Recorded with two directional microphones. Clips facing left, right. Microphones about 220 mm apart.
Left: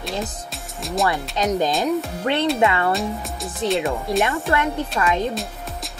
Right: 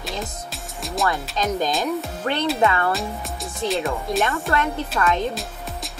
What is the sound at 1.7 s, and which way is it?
Speech, centre (ahead or behind).